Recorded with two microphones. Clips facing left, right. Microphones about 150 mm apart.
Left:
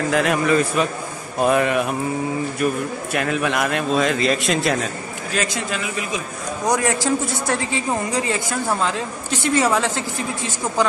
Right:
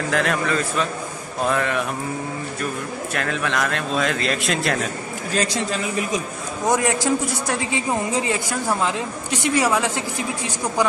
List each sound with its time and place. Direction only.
0.1 s a man's voice: 5° left (ahead or behind)
3.1 s a man's voice: 10° left (ahead or behind)
5.3 s a man's voice: 35° right (ahead or behind)
6.7 s a man's voice: 20° right (ahead or behind)